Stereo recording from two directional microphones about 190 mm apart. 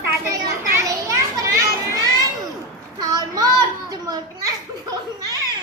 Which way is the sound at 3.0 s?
20° right (ahead or behind).